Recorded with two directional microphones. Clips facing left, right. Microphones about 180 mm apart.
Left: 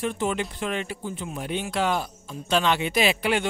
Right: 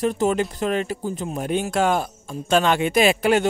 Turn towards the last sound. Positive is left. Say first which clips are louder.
# right 6 dB
turn(degrees=-45)  # may be behind; listen again after turning